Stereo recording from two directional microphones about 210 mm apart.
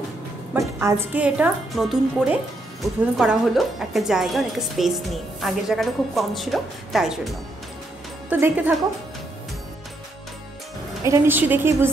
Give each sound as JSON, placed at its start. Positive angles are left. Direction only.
{"t": 0.7, "sound": "a woman's voice", "side_deg": -10}
{"t": 11.1, "sound": "a woman's voice", "side_deg": -10}